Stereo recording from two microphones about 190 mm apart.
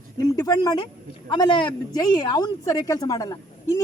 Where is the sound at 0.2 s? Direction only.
20° left (ahead or behind).